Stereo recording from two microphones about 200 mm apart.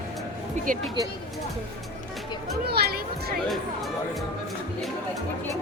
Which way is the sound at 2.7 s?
50° right (ahead or behind).